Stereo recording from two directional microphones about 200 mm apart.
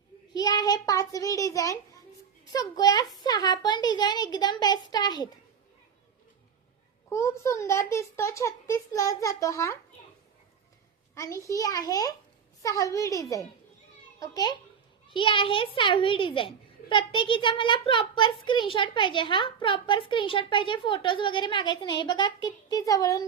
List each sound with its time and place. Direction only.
0.3 s a child's voice: 20° left (ahead or behind)
7.1 s a child's voice: 15° left (ahead or behind)
11.1 s a child's voice: 15° left (ahead or behind)